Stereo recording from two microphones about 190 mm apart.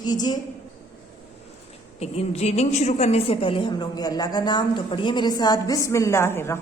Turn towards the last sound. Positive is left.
turn(degrees=15)  # may be behind; listen again after turning